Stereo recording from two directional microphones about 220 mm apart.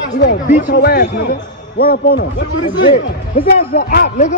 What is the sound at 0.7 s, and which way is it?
A man's voice, 50° left (ahead or behind).